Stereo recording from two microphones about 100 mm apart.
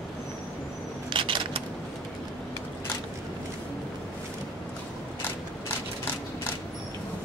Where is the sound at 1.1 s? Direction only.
55° right (ahead or behind).